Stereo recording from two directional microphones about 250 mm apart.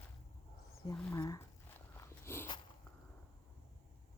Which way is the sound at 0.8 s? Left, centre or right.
Centre.